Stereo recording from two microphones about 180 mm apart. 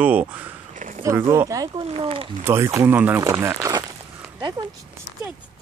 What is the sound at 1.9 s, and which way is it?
Speech, 30° right (ahead or behind).